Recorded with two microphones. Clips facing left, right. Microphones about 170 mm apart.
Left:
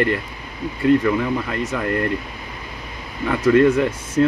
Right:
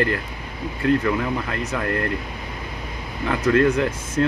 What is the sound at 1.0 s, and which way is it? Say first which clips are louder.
Speech: left 3 dB; centre (ahead or behind).